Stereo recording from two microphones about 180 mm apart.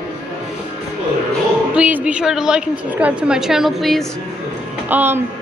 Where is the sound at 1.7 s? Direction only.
5° right (ahead or behind).